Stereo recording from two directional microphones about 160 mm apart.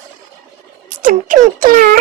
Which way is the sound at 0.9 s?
60° right (ahead or behind).